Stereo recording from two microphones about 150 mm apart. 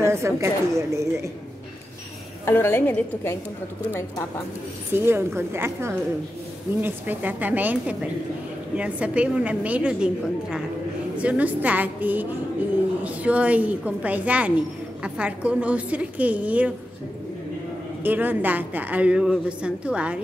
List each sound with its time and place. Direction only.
0.0 s a woman's voice: 20° right (ahead or behind)
2.4 s a woman's voice: 15° left (ahead or behind)
4.9 s a woman's voice: 15° right (ahead or behind)
18.0 s a woman's voice: 10° right (ahead or behind)